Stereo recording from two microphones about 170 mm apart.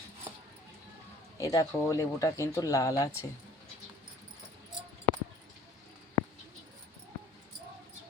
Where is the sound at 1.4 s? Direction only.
20° left (ahead or behind).